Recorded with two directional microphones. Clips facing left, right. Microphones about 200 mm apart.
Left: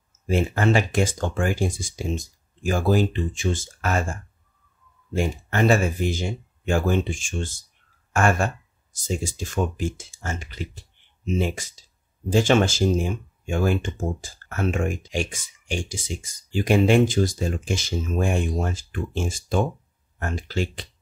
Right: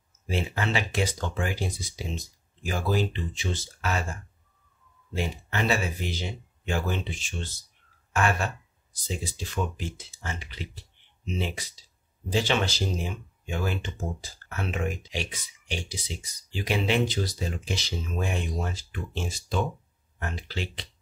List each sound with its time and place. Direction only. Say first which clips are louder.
0.3 s speech: left 8 dB; 50° left (ahead or behind)